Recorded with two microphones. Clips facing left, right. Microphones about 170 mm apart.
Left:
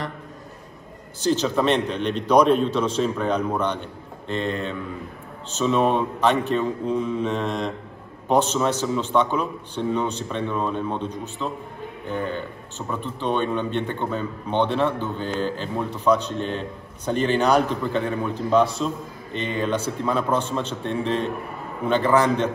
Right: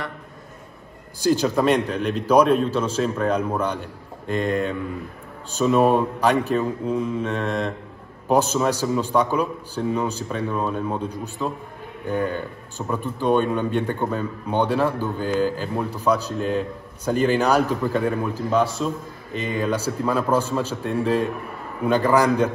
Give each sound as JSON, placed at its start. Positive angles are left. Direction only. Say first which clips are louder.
{"t": 1.2, "sound": "a man's voice", "louder": "right 2 dB", "side_deg": -10}